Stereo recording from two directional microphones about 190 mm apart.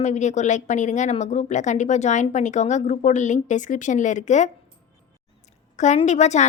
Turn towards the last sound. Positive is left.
turn(degrees=35)  # may be behind; listen again after turning